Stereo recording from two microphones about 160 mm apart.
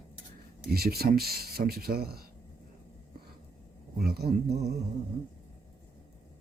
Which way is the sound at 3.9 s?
80° right.